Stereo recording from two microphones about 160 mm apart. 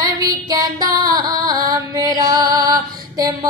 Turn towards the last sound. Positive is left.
turn(degrees=-25)  # may be behind; listen again after turning